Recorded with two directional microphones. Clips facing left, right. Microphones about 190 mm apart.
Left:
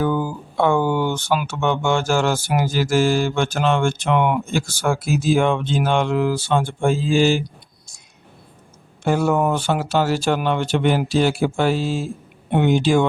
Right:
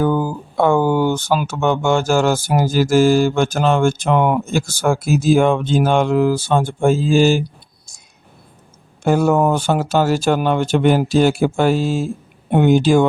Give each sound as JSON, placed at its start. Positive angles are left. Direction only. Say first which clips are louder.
{"t": 0.0, "sound": "speech", "louder": "right 3 dB", "side_deg": -45}
{"t": 9.0, "sound": "speech", "louder": "right 4 dB", "side_deg": -45}